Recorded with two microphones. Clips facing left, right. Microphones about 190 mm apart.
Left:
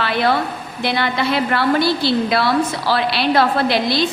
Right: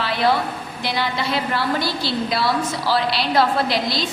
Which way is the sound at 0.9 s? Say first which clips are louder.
Left 4 dB; 60° left (ahead or behind).